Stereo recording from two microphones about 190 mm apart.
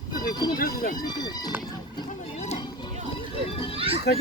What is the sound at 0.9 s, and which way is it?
Speech, 20° left (ahead or behind).